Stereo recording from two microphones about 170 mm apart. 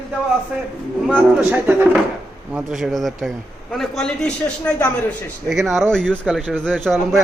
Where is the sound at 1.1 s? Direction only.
10° right (ahead or behind).